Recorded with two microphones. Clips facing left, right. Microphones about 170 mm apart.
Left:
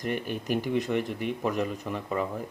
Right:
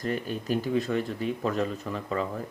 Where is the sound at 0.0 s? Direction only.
15° left (ahead or behind).